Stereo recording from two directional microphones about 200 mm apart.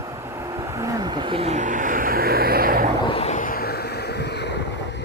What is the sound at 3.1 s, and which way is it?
Vehicle, 30° left (ahead or behind).